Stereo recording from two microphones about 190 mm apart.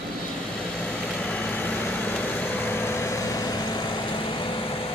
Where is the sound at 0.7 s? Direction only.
5° left (ahead or behind).